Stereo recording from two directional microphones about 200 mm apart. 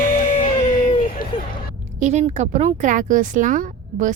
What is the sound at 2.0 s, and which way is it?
Speech, 35° right (ahead or behind).